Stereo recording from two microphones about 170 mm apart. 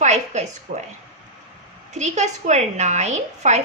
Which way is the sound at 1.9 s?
45° right (ahead or behind).